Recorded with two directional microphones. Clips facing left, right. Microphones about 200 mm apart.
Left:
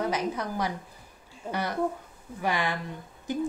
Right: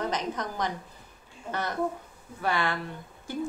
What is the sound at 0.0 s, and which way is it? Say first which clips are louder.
A woman's voice: left 2 dB; 10° left (ahead or behind).